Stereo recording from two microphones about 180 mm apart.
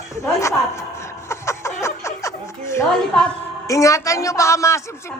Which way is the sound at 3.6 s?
20° left (ahead or behind).